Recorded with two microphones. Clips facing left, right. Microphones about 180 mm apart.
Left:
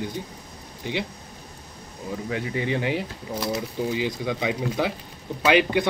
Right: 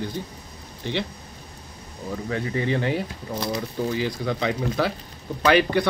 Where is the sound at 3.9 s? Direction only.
15° left (ahead or behind).